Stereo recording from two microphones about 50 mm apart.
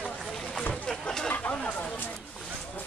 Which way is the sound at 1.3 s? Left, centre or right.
Left.